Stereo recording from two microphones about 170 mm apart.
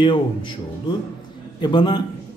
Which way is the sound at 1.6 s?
25° left (ahead or behind).